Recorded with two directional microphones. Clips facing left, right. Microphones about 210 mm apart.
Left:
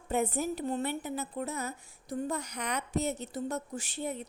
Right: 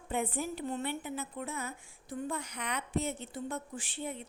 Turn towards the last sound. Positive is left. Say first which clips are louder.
# left 4 dB
turn(degrees=40)  # may be behind; listen again after turning